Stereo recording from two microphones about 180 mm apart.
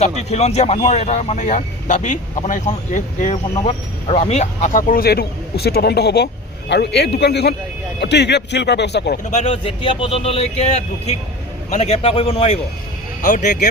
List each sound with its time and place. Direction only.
0.2 s a man's voice: 35° left (ahead or behind); by 9.1 s 70° left (ahead or behind)
9.3 s speech: 35° left (ahead or behind)
13.2 s speech: 45° left (ahead or behind)